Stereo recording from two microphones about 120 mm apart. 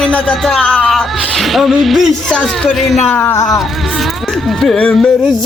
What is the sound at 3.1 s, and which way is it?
Speech, 20° left (ahead or behind).